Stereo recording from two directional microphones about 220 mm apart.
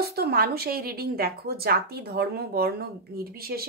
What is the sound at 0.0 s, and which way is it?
Speech, 45° right (ahead or behind).